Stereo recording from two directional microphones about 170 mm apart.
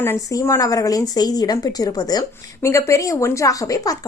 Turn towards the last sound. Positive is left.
turn(degrees=20)  # may be behind; listen again after turning